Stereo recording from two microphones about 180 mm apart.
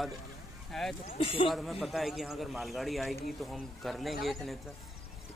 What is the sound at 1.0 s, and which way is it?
Speech, 30° left (ahead or behind).